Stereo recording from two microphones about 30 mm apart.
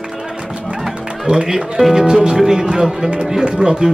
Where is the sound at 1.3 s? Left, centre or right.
Right.